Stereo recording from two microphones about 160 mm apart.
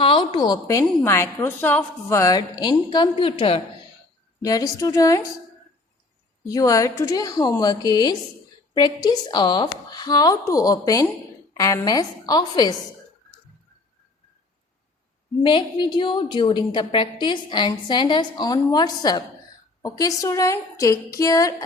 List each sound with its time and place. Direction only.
0.0 s a woman's voice: 30° left (ahead or behind)
4.4 s a woman's voice: 20° left (ahead or behind)
6.5 s a woman's voice: 20° left (ahead or behind)
15.4 s a woman's voice: 30° left (ahead or behind)